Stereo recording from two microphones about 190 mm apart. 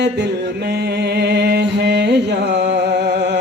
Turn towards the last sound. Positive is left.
turn(degrees=-60)  # may be behind; listen again after turning